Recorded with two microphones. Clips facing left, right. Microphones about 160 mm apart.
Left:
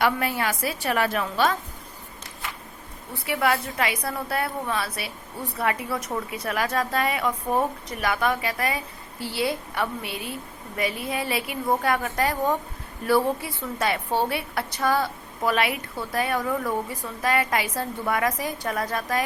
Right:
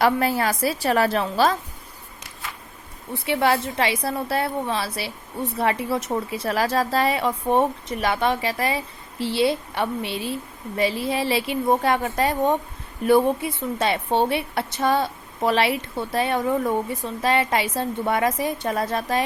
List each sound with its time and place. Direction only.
0.0 s a woman's voice: 35° right (ahead or behind)
3.2 s a woman's voice: 30° right (ahead or behind)